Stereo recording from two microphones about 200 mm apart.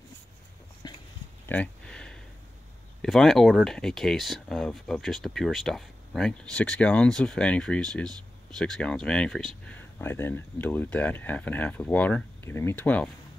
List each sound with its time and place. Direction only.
0.8 s dog: 20° left (ahead or behind)
1.5 s a sound: 5° left (ahead or behind)
3.0 s speech: centre (ahead or behind)